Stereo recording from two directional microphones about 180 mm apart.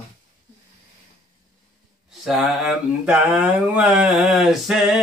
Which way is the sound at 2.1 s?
Centre (ahead or behind).